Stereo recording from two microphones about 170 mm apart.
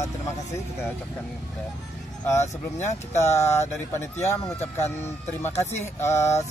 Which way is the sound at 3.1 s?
15° left (ahead or behind).